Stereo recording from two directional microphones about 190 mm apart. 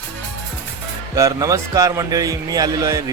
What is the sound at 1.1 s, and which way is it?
Speech, 15° right (ahead or behind).